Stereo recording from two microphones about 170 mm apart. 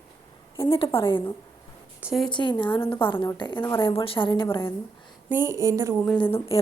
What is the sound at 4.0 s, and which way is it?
Speech, 30° left (ahead or behind).